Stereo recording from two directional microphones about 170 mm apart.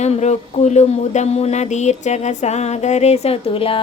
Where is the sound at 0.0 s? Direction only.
40° left (ahead or behind).